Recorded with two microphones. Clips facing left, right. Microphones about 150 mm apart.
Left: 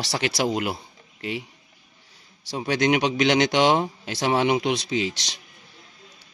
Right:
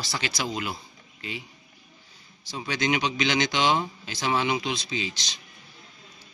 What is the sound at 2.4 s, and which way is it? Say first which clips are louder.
A man's voice: left 6 dB; 70° left (ahead or behind).